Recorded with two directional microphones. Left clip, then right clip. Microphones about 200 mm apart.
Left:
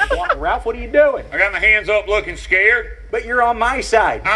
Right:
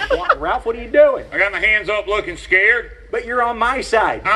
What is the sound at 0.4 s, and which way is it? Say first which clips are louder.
A man's voice: left 1 dB; 50° left (ahead or behind).